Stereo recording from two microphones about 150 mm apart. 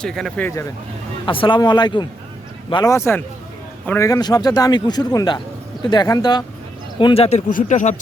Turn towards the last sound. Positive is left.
turn(degrees=55)  # may be behind; listen again after turning